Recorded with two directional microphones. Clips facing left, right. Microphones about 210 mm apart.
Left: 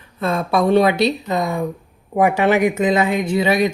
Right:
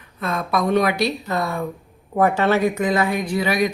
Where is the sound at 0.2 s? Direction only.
30° left (ahead or behind).